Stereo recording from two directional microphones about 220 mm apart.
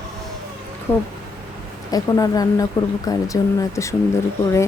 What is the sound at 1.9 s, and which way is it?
Speech, 15° left (ahead or behind).